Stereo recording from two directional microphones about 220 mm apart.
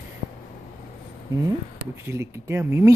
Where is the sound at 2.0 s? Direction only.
15° right (ahead or behind).